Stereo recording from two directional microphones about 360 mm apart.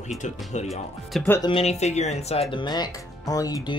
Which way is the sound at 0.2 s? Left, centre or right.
Centre.